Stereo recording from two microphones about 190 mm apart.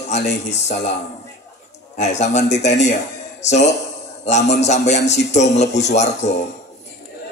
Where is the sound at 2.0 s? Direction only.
35° left (ahead or behind).